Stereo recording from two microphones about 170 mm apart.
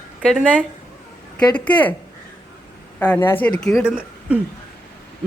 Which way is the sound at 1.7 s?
10° left (ahead or behind).